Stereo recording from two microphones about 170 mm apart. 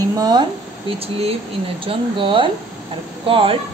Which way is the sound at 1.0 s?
35° right (ahead or behind).